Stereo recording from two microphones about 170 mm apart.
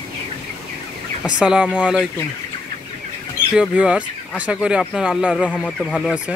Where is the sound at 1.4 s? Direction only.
5° right (ahead or behind).